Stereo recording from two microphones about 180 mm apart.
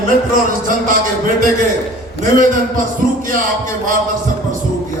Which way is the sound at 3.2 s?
50° right (ahead or behind).